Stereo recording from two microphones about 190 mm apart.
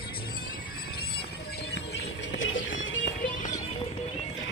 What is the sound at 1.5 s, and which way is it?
Music, 60° left (ahead or behind).